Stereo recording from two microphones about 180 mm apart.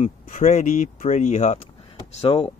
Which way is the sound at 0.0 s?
45° left (ahead or behind).